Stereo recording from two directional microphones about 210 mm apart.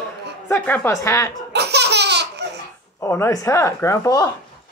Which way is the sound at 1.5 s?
50° right (ahead or behind).